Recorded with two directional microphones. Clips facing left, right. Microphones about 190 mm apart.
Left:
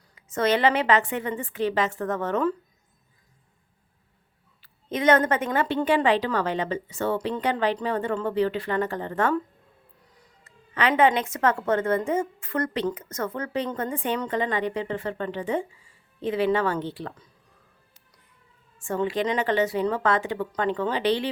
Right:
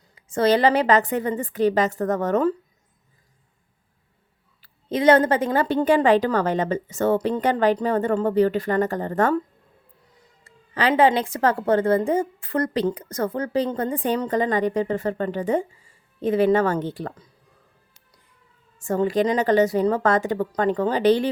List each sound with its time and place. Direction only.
0.2 s a woman's voice: 30° right (ahead or behind)
4.6 s a woman's voice: 30° right (ahead or behind)
10.4 s a woman's voice: 35° right (ahead or behind)
18.8 s a woman's voice: 40° right (ahead or behind)